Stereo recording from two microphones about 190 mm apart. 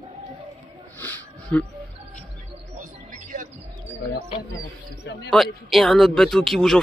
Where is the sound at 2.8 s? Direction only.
45° right (ahead or behind).